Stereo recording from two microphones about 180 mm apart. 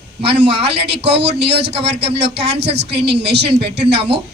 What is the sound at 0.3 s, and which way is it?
Speech, 65° right (ahead or behind).